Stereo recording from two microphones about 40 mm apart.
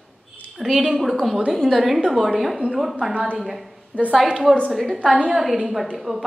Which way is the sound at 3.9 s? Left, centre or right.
Left.